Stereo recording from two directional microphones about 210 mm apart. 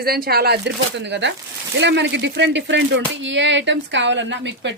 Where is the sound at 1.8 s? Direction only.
55° right (ahead or behind).